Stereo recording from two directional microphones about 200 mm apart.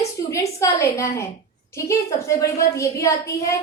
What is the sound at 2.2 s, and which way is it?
A woman's voice, 15° left (ahead or behind).